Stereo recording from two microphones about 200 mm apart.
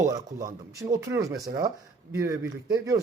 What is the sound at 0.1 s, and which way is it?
Speech, 15° right (ahead or behind).